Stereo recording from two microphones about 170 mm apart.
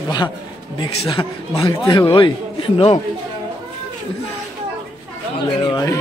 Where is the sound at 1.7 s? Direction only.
20° left (ahead or behind).